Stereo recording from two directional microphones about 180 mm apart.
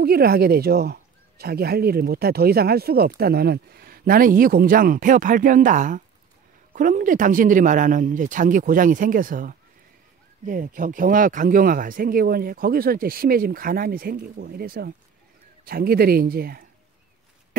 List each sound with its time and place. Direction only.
0.0 s speech: 60° right (ahead or behind)